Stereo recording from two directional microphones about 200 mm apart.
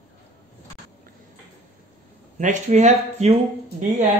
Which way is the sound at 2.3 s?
35° right (ahead or behind).